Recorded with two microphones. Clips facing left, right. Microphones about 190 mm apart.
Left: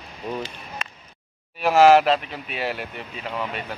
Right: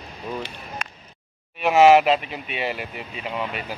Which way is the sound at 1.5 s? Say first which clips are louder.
Even; centre (ahead or behind).